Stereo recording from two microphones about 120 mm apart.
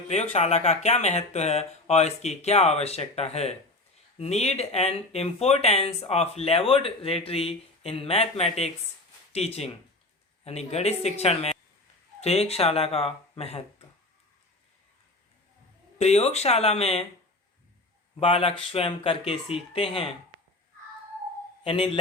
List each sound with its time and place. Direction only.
0.1 s speech: 70° left (ahead or behind)
16.0 s speech: 65° left (ahead or behind)
18.2 s speech: 55° left (ahead or behind)
21.6 s a man's voice: 50° left (ahead or behind)